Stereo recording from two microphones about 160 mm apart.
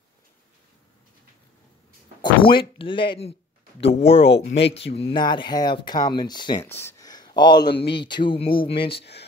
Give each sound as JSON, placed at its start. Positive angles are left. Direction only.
{"t": 2.2, "sound": "speech", "side_deg": 30}
{"t": 6.6, "sound": "speech", "side_deg": 15}